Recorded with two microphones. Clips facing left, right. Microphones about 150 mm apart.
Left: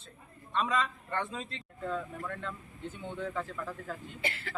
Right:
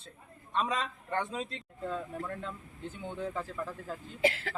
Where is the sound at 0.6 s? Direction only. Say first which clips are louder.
Left 2 dB; 35° right (ahead or behind).